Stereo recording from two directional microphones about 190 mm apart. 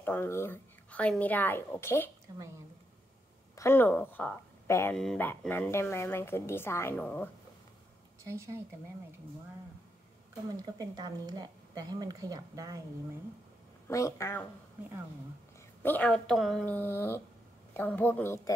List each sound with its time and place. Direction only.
0.0 s speech: 10° left (ahead or behind)
2.3 s speech: 20° right (ahead or behind)
3.5 s a woman's voice: 15° left (ahead or behind)
8.2 s a woman's voice: 15° right (ahead or behind)
10.5 s speech: 20° right (ahead or behind)
13.8 s speech: 15° left (ahead or behind)
15.8 s speech: 10° left (ahead or behind)